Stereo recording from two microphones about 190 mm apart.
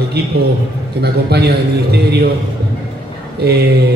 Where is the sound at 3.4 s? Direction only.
55° right (ahead or behind).